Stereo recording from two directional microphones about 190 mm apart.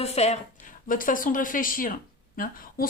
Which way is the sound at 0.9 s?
45° left (ahead or behind).